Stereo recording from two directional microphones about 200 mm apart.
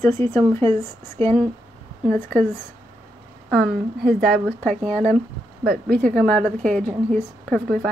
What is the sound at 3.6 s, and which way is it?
Speech, 50° right (ahead or behind).